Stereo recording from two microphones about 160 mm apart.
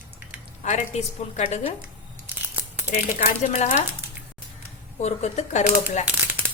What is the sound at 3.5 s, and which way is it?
Speech, 45° left (ahead or behind).